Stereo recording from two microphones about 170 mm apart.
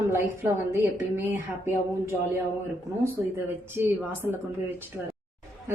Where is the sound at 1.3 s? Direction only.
15° right (ahead or behind).